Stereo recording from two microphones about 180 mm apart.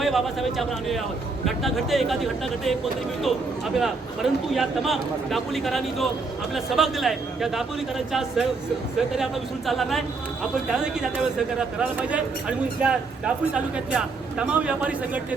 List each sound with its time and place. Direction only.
0.0 s speech: centre (ahead or behind)